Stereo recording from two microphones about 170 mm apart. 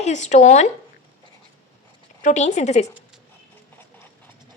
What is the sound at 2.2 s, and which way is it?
Speech, 45° left (ahead or behind).